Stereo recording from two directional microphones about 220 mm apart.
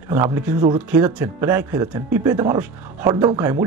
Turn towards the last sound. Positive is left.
turn(degrees=-15)  # may be behind; listen again after turning